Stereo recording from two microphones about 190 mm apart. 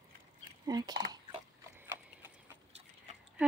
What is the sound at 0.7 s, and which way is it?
Speech, 20° right (ahead or behind).